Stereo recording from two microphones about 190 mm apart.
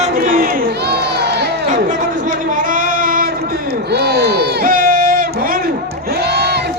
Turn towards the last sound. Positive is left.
turn(degrees=-60)  # may be behind; listen again after turning